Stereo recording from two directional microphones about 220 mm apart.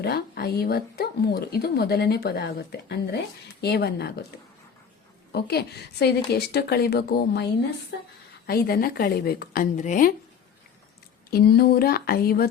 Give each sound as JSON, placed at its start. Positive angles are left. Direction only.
{"t": 0.0, "sound": "speech", "side_deg": 45}
{"t": 5.3, "sound": "speech", "side_deg": 45}
{"t": 11.3, "sound": "speech", "side_deg": 45}